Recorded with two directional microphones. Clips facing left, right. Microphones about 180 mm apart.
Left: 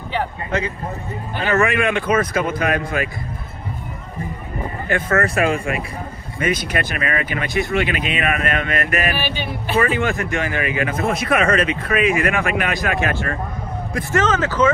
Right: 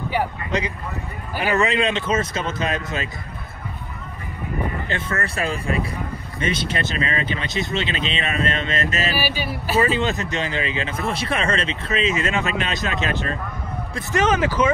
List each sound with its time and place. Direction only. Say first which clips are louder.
0.1 s speech: left 2 dB; 15° right (ahead or behind)
5.2 s speech: left 6 dB; 30° right (ahead or behind)
9.2 s speech: even; 5° right (ahead or behind)
9.8 s speech: left 2 dB; 20° right (ahead or behind)